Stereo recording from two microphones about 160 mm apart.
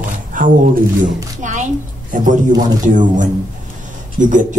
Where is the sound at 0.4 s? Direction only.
55° right (ahead or behind).